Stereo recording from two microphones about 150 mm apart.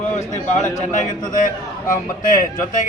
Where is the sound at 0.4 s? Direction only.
55° left (ahead or behind).